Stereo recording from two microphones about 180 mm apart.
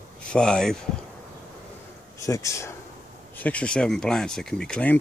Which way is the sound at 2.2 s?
15° left (ahead or behind).